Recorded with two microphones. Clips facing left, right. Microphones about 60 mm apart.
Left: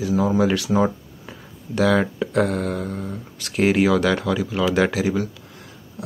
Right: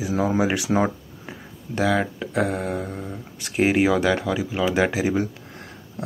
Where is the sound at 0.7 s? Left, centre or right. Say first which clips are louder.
Left 2 dB; right.